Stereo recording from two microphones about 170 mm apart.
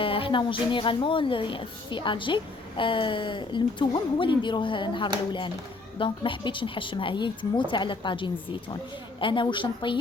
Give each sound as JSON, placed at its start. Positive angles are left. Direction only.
{"t": 0.0, "sound": "a woman's voice", "side_deg": 30}